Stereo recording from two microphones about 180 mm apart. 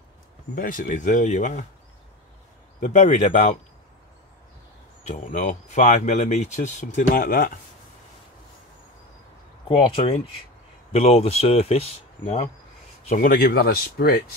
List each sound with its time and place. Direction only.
0.6 s speech: 50° left (ahead or behind)
2.8 s speech: 45° left (ahead or behind)
5.0 s speech: 45° left (ahead or behind)
9.7 s speech: 30° left (ahead or behind)
13.1 s speech: 50° left (ahead or behind)